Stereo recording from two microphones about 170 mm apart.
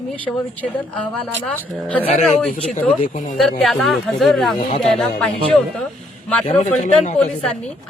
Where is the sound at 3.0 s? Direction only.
50° left (ahead or behind).